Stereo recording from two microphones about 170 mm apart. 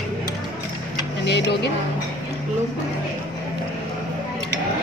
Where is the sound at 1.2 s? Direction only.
90° left.